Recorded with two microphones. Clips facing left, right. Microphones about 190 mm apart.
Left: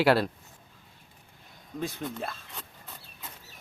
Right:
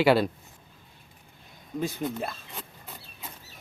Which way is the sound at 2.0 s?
10° right (ahead or behind).